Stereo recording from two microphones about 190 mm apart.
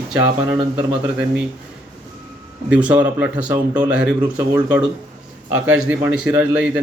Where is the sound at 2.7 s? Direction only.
5° right (ahead or behind).